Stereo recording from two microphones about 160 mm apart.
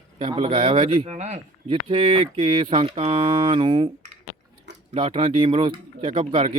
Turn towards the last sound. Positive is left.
turn(degrees=-30)  # may be behind; listen again after turning